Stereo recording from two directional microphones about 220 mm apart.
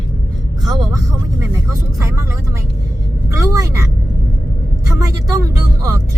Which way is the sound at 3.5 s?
15° right (ahead or behind).